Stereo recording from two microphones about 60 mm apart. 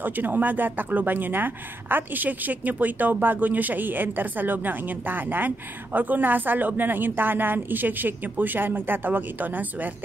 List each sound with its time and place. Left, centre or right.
0.0 s speech: right